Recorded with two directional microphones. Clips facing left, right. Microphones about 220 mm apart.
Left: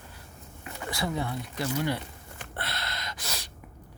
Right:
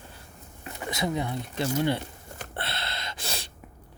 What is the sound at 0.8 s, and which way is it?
Speech, 20° right (ahead or behind).